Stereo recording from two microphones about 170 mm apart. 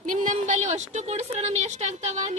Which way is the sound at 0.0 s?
50° right (ahead or behind).